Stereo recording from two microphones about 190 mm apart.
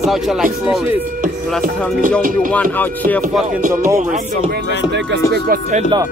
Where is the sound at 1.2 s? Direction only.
45° right (ahead or behind).